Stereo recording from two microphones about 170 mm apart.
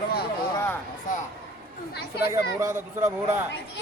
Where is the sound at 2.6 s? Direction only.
15° right (ahead or behind).